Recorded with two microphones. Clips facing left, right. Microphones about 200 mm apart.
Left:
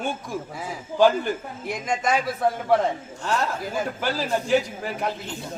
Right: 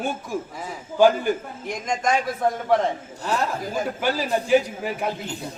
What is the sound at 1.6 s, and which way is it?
Speech, 5° left (ahead or behind).